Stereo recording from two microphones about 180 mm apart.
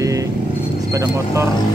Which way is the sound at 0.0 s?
20° right (ahead or behind).